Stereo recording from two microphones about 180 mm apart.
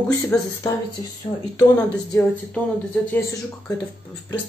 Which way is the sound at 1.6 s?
15° left (ahead or behind).